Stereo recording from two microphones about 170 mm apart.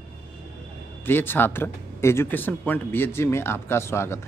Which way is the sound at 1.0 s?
10° left (ahead or behind).